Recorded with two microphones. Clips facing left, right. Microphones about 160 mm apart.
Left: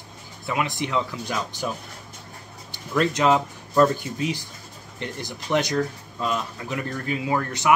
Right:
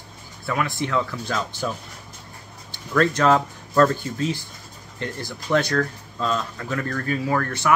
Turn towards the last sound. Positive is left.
turn(degrees=15)  # may be behind; listen again after turning